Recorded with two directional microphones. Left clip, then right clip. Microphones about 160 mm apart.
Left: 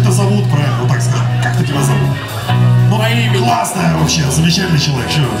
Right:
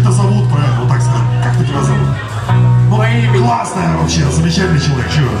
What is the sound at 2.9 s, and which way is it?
A man's voice, 10° right (ahead or behind).